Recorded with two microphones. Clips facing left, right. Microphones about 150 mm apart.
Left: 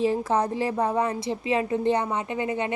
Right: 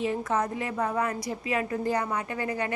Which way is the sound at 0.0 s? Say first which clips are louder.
Left 4 dB; 30° left (ahead or behind).